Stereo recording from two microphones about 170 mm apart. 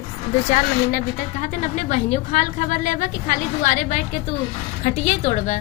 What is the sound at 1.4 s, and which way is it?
A woman's voice, 45° left (ahead or behind).